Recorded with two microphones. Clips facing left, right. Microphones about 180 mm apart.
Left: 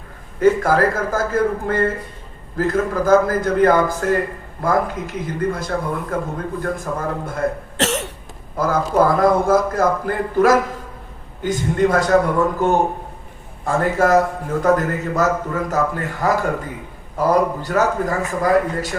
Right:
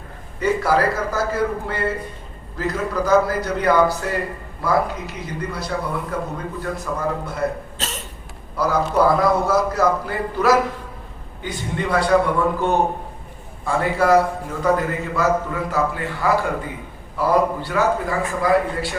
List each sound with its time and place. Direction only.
0.3 s a man's voice: 50° left (ahead or behind)
7.8 s cough: 75° left (ahead or behind)
8.5 s a man's voice: 50° left (ahead or behind)